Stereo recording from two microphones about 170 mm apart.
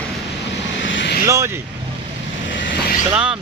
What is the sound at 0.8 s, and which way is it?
Vehicle, 90° left.